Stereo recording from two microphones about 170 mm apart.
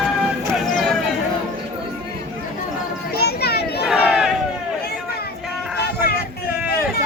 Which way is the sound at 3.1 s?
70° left (ahead or behind).